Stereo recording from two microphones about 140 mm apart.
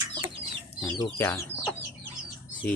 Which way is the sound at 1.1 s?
20° left (ahead or behind).